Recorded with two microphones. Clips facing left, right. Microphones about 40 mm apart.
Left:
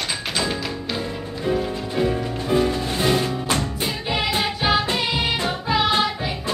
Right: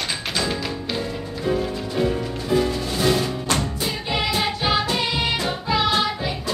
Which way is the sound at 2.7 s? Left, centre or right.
Left.